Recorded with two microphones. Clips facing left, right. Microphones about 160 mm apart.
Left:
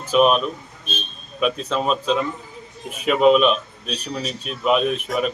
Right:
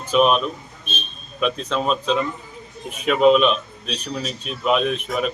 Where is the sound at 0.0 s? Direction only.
5° left (ahead or behind).